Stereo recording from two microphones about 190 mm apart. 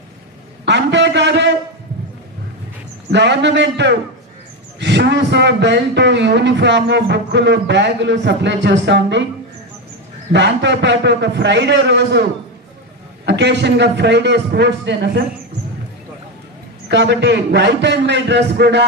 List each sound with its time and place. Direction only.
0.7 s a sound: 65° right (ahead or behind)
3.1 s a man's voice: 65° right (ahead or behind)
10.3 s a man's voice: 65° right (ahead or behind)
16.9 s a man's voice: 65° right (ahead or behind)